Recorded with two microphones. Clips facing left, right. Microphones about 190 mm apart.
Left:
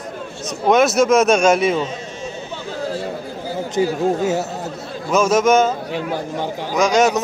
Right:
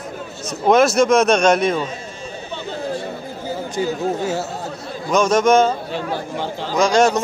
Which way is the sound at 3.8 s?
20° left (ahead or behind).